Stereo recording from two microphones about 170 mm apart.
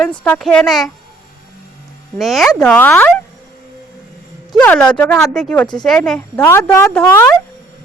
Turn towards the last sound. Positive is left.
turn(degrees=10)  # may be behind; listen again after turning